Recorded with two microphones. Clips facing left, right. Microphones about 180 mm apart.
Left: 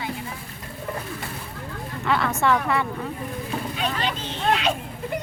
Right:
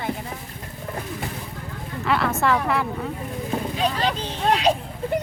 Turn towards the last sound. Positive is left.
turn(degrees=-35)  # may be behind; listen again after turning